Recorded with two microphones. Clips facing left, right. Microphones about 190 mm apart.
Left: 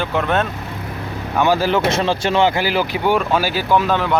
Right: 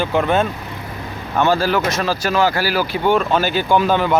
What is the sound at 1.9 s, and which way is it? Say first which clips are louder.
Speech: left 2 dB; 25° left (ahead or behind).